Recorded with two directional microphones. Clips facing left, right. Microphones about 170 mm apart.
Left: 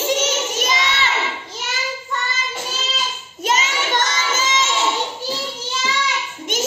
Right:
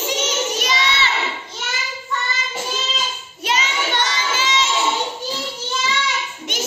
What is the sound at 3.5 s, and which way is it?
Child singing, 45° left (ahead or behind).